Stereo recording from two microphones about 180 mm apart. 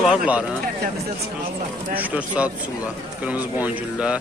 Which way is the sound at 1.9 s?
10° right (ahead or behind).